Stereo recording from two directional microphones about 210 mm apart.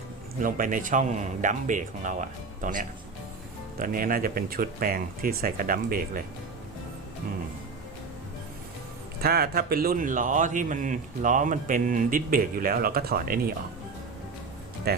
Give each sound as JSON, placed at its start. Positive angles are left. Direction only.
{"t": 0.4, "sound": "speech", "side_deg": -40}
{"t": 9.2, "sound": "speech", "side_deg": -45}
{"t": 14.9, "sound": "speech", "side_deg": -50}